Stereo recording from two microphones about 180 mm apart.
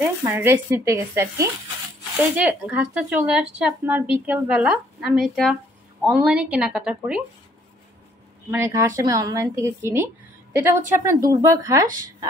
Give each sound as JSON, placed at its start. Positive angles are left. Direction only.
{"t": 0.2, "sound": "a woman's voice", "side_deg": -10}
{"t": 8.5, "sound": "speech", "side_deg": -15}